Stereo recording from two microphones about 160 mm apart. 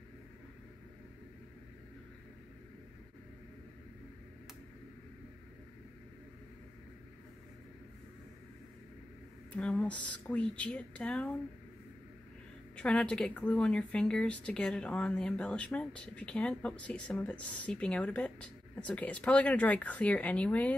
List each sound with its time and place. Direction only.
9.6 s speech: 10° left (ahead or behind)
12.7 s speech: 5° left (ahead or behind)